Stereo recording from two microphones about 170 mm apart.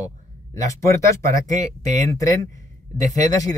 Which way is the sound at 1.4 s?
45° right (ahead or behind).